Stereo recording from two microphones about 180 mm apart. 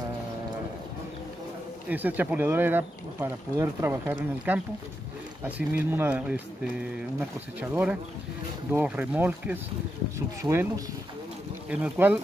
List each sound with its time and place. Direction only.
1.9 s speech: 10° right (ahead or behind)
5.9 s speech: 10° right (ahead or behind)
11.7 s speech: 10° right (ahead or behind)